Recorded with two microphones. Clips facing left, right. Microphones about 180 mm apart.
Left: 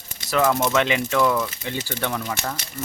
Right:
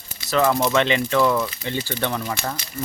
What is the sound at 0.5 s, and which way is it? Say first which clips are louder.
Speech: right 1 dB; 5° left (ahead or behind).